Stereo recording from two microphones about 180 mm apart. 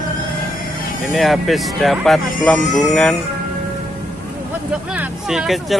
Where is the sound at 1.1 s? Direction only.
Centre (ahead or behind).